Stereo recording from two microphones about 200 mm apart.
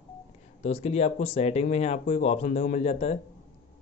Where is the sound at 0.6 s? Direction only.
30° left (ahead or behind).